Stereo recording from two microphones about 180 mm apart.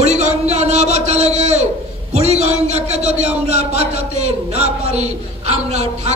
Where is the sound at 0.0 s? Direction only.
40° right (ahead or behind).